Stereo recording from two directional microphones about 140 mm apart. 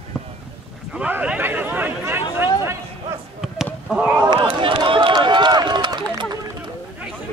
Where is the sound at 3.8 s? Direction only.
5° right (ahead or behind).